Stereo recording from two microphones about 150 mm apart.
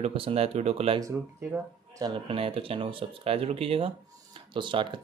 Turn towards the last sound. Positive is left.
turn(degrees=-35)  # may be behind; listen again after turning